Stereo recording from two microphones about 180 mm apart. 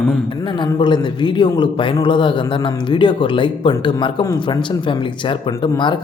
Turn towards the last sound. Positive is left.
turn(degrees=20)  # may be behind; listen again after turning